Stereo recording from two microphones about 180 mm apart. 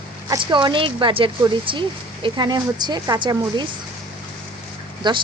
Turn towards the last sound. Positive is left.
turn(degrees=-25)  # may be behind; listen again after turning